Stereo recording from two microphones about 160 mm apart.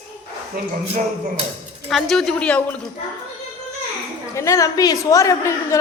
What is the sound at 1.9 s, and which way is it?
Speech, centre (ahead or behind).